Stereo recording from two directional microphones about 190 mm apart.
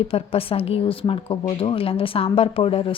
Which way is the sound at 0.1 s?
30° left (ahead or behind).